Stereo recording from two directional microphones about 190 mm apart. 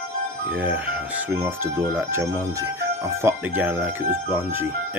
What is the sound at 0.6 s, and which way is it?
Speech, 10° right (ahead or behind).